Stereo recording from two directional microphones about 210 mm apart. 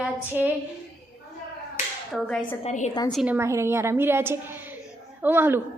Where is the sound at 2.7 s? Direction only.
35° left (ahead or behind).